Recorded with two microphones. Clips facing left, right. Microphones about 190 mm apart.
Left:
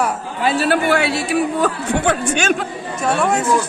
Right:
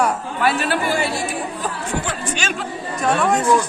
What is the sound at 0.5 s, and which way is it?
Speech, 35° left (ahead or behind).